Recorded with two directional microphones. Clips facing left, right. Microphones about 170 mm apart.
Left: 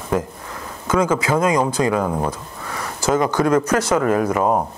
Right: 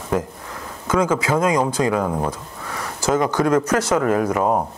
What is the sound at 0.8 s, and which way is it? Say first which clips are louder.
Speech: left 1 dB; 20° left (ahead or behind).